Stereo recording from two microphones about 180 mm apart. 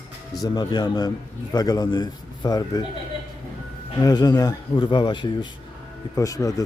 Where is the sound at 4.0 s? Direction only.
20° left (ahead or behind).